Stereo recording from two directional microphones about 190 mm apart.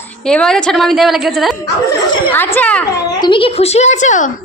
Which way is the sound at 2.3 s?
10° left (ahead or behind).